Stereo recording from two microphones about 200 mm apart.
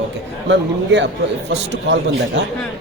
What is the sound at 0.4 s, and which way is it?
A woman's voice, 65° right (ahead or behind).